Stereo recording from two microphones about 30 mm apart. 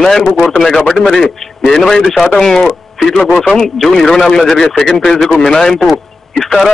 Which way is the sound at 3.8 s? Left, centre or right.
Centre.